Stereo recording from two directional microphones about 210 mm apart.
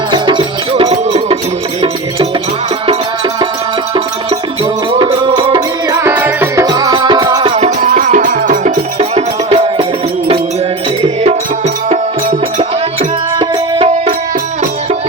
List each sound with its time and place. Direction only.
0.1 s music: 20° right (ahead or behind)
4.9 s music: 20° right (ahead or behind)
11.0 s music: 30° right (ahead or behind)
13.4 s music: 25° right (ahead or behind)